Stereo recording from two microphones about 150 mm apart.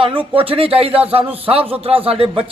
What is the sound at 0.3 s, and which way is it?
A man's voice, 40° right (ahead or behind).